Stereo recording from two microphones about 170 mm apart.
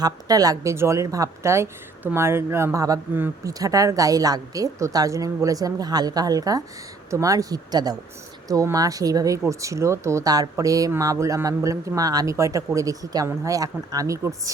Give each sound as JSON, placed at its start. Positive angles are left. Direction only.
{"t": 0.0, "sound": "speech", "side_deg": -20}